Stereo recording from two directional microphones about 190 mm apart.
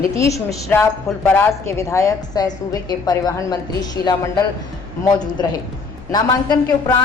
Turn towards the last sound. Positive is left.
turn(degrees=20)  # may be behind; listen again after turning